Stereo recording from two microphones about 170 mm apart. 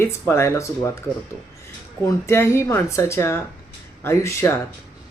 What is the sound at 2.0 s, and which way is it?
Speech, 15° left (ahead or behind).